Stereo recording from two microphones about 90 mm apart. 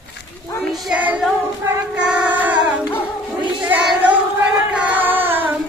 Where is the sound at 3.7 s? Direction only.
15° right (ahead or behind).